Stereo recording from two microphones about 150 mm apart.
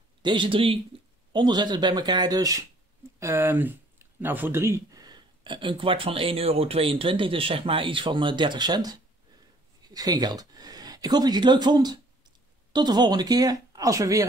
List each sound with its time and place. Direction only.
0.2 s speech: 30° right (ahead or behind)